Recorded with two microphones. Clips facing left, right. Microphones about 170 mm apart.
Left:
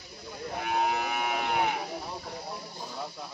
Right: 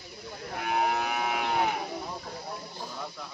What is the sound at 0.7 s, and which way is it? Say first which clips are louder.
Moo: right 1 dB; centre (ahead or behind).